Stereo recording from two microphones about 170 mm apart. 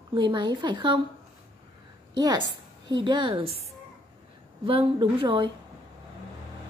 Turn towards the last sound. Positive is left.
turn(degrees=-30)  # may be behind; listen again after turning